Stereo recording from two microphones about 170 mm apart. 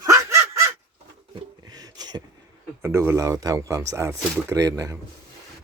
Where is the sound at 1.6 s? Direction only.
20° right (ahead or behind).